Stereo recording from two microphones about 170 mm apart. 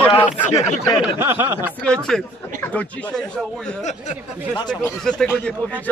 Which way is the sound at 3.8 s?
45° left (ahead or behind).